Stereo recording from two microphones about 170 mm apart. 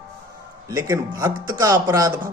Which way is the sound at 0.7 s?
20° right (ahead or behind).